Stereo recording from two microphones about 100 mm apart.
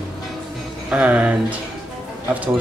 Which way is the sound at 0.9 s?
15° right (ahead or behind).